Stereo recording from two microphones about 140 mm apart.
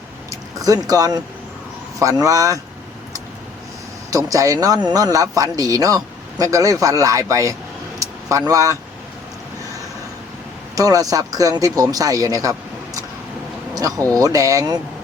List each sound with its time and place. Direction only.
0.3 s a sound: 25° right (ahead or behind)
0.9 s speech: 25° right (ahead or behind)
4.1 s speech: 25° right (ahead or behind)
7.9 s vehicle: 25° right (ahead or behind)
10.8 s speech: 25° right (ahead or behind)